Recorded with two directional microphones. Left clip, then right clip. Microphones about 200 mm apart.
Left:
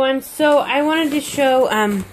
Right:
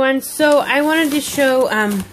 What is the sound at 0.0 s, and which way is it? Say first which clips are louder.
Speech: right 1 dB; 15° right (ahead or behind).